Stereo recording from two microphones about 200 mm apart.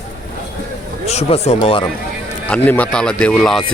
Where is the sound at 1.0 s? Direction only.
35° left (ahead or behind).